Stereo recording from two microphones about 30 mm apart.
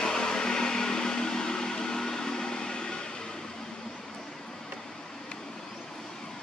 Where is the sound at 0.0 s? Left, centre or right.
Left.